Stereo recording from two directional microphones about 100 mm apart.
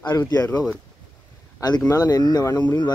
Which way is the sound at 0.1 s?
35° left (ahead or behind).